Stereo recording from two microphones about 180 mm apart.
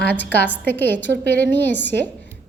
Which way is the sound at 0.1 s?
70° left (ahead or behind).